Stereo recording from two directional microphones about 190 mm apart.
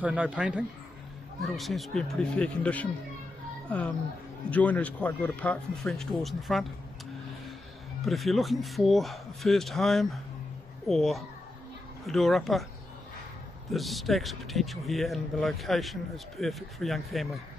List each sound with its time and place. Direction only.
0.0 s speech: 5° right (ahead or behind)
8.0 s speech: centre (ahead or behind)
13.7 s speech: centre (ahead or behind)